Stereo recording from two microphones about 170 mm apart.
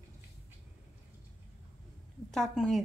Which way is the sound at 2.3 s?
Centre (ahead or behind).